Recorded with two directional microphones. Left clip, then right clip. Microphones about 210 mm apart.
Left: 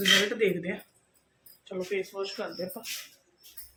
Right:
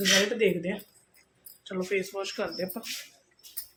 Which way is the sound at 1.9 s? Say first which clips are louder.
Right 2 dB; 30° right (ahead or behind).